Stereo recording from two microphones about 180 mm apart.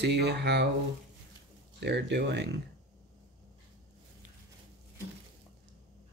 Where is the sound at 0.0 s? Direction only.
70° right (ahead or behind).